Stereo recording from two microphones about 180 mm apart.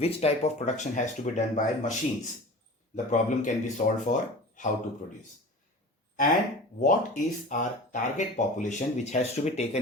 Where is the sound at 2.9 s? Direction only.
45° left (ahead or behind).